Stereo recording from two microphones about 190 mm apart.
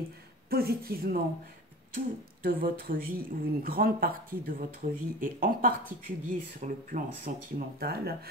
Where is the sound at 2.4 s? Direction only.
50° right (ahead or behind).